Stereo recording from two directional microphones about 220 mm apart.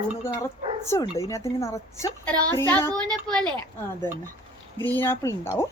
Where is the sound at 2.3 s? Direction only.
20° right (ahead or behind).